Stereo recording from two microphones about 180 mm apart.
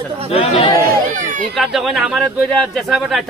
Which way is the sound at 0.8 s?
50° right (ahead or behind).